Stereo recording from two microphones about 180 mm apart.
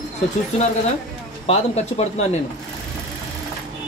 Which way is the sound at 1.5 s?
35° left (ahead or behind).